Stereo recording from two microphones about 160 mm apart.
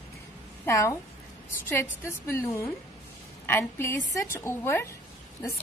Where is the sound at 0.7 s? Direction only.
15° left (ahead or behind).